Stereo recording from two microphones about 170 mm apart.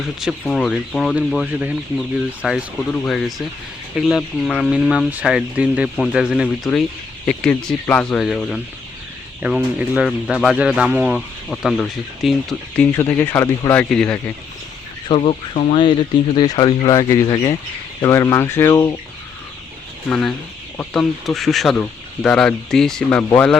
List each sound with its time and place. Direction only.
0.2 s speech: centre (ahead or behind)
13.0 s speech: 15° left (ahead or behind)
15.0 s speech: 30° left (ahead or behind)
20.1 s speech: 5° left (ahead or behind)